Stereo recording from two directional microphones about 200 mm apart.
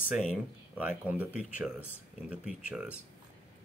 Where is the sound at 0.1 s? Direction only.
5° right (ahead or behind).